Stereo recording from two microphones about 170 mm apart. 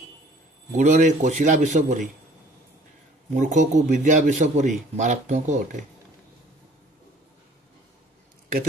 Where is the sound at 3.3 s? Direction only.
45° right (ahead or behind).